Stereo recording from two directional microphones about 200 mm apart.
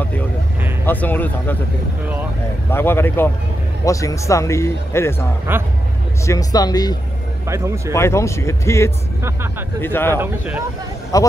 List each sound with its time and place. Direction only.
0.8 s speech: 10° left (ahead or behind)
2.7 s speech: 10° left (ahead or behind)
5.5 s speech: 10° right (ahead or behind)
6.2 s speech: 20° left (ahead or behind)
7.4 s speech: 15° right (ahead or behind)
7.9 s speech: 15° left (ahead or behind)
10.1 s speech: 10° right (ahead or behind)
11.1 s speech: 15° left (ahead or behind)